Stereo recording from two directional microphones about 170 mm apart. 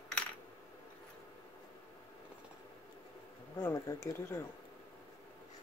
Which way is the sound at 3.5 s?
20° left (ahead or behind).